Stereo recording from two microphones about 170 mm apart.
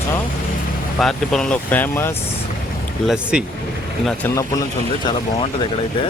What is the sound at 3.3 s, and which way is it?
Speech, 5° right (ahead or behind).